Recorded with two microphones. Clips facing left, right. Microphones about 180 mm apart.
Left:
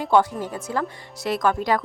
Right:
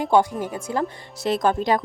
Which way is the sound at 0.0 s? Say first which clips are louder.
Right 1 dB; 15° right (ahead or behind).